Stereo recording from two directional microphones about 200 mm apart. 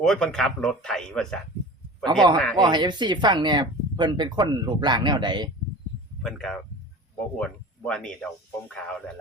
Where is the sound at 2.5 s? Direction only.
20° right (ahead or behind).